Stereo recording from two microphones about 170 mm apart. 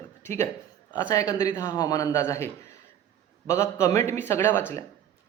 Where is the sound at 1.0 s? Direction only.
20° left (ahead or behind).